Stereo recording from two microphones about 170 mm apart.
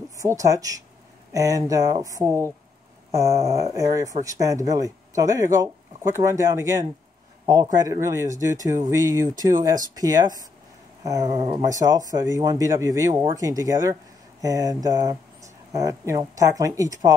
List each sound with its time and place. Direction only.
0.2 s speech: 20° right (ahead or behind)